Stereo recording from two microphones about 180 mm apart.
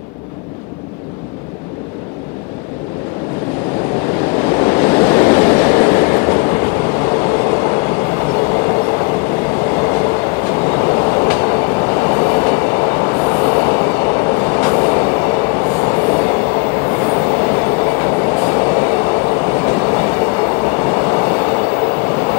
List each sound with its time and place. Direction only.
4.4 s train: 15° left (ahead or behind)